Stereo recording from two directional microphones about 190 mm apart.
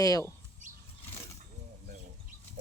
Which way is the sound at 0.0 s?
15° left (ahead or behind).